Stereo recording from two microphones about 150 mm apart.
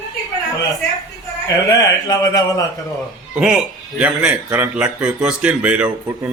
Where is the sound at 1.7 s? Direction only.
25° left (ahead or behind).